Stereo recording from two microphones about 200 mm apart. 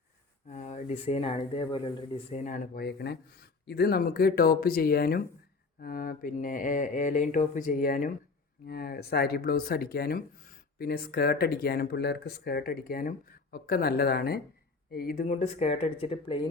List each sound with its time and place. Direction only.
0.4 s speech: 35° left (ahead or behind)